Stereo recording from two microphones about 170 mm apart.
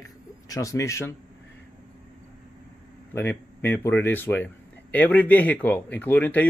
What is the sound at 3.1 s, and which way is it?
Speech, 10° left (ahead or behind).